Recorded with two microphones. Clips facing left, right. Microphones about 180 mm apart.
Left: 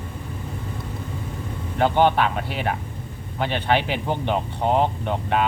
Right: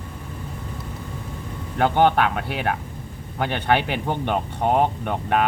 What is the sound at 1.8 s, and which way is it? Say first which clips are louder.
Speech: even; 55° right (ahead or behind).